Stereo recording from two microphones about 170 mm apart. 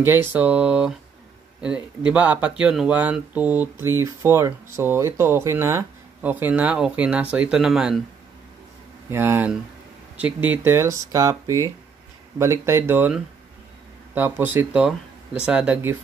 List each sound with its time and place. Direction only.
0.0 s speech: 15° right (ahead or behind)
9.1 s speech: 15° right (ahead or behind)